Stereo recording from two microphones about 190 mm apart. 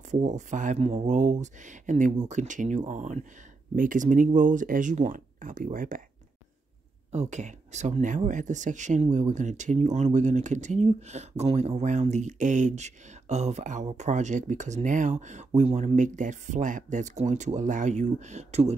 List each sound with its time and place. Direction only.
0.1 s speech: 40° right (ahead or behind)
7.1 s speech: 35° right (ahead or behind)